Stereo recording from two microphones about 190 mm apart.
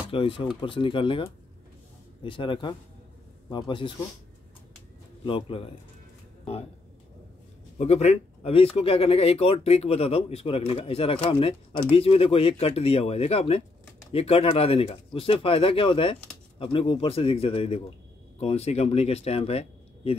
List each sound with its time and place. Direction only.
0.1 s speech: 25° left (ahead or behind)
5.2 s speech: 30° left (ahead or behind)
7.7 s speech: 35° left (ahead or behind)